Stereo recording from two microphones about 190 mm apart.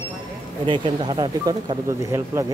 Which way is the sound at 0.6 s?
25° right (ahead or behind).